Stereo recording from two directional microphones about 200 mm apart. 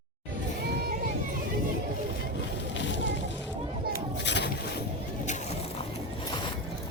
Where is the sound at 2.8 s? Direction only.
65° left (ahead or behind).